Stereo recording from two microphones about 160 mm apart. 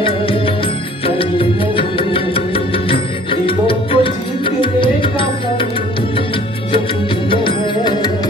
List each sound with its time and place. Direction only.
1.0 s music: 35° left (ahead or behind)
7.2 s music: 30° left (ahead or behind)